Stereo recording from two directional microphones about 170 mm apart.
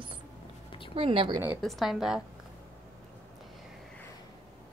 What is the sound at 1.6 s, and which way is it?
Speech, centre (ahead or behind).